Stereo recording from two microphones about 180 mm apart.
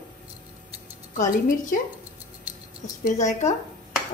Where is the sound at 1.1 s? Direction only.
45° left (ahead or behind).